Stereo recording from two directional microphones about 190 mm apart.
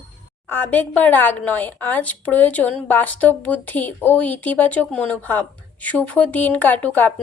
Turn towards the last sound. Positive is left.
turn(degrees=10)  # may be behind; listen again after turning